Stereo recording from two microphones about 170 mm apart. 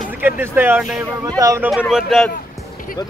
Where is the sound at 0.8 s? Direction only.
Centre (ahead or behind).